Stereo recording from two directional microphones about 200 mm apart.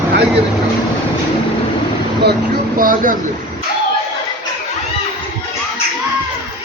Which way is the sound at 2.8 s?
45° right (ahead or behind).